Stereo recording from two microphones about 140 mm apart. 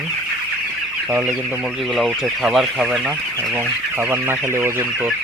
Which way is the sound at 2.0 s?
Centre (ahead or behind).